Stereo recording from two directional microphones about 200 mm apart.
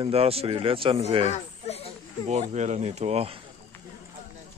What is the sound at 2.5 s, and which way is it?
Speech, 35° right (ahead or behind).